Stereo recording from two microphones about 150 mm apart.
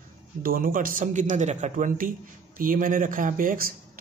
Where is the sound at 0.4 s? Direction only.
70° right (ahead or behind).